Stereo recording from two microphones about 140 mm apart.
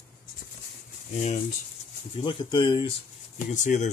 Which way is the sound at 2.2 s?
35° left (ahead or behind).